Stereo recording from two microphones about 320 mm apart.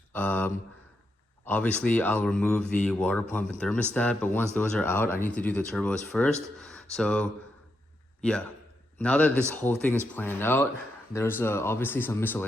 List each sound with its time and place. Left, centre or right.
0.1 s speech: centre